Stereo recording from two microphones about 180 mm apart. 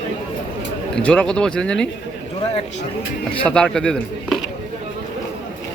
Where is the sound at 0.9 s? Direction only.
5° left (ahead or behind).